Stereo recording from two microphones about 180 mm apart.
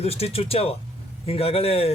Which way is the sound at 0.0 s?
35° left (ahead or behind).